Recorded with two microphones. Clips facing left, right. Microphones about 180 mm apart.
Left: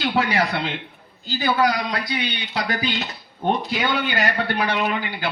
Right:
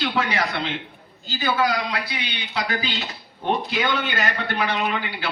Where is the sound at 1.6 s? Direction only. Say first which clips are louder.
Left 2 dB; 40° left (ahead or behind).